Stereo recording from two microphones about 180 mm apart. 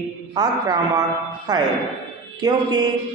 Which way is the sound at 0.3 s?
20° right (ahead or behind).